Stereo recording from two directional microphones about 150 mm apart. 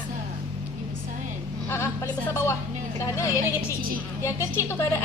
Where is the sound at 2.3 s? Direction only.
15° left (ahead or behind).